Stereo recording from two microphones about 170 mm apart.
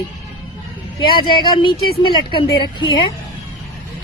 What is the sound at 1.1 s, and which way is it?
Speech, 25° left (ahead or behind).